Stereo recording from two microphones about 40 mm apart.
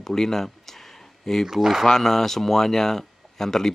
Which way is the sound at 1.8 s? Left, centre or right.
Centre.